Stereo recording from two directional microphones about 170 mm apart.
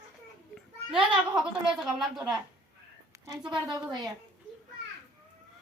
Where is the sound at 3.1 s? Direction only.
15° right (ahead or behind).